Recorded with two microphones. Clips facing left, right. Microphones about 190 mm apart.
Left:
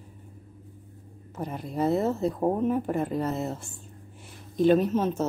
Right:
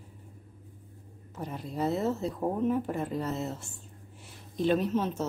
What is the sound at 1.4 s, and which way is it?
Speech, 50° left (ahead or behind).